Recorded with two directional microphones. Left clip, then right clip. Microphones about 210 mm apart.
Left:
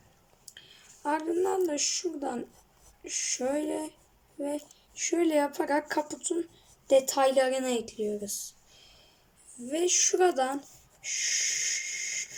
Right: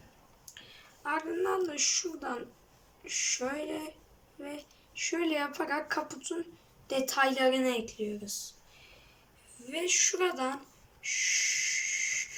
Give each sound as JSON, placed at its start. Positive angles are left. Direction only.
{"t": 1.0, "sound": "speech", "side_deg": 20}
{"t": 9.7, "sound": "speech", "side_deg": 25}
{"t": 11.0, "sound": "owl", "side_deg": 25}